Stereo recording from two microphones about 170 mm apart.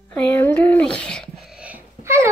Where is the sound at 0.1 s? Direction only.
10° left (ahead or behind).